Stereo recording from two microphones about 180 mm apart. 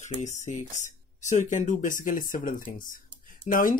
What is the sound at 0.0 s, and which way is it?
Speech, 40° left (ahead or behind).